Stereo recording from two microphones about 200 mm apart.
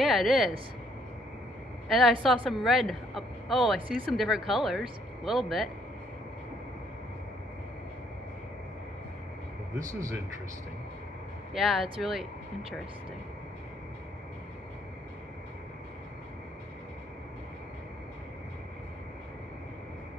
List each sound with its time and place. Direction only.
0.0 s speech: centre (ahead or behind)
1.9 s a woman's voice: centre (ahead or behind)
9.8 s speech: 15° right (ahead or behind)
11.5 s a woman's voice: centre (ahead or behind)